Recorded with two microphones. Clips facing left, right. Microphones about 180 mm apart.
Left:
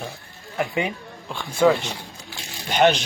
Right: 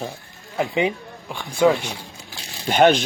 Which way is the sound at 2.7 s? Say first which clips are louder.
Right 3 dB; 50° right (ahead or behind).